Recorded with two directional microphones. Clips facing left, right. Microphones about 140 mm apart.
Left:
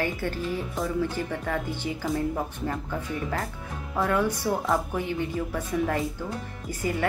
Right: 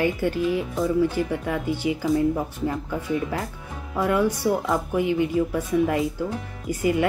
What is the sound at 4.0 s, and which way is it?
Speech, 15° right (ahead or behind).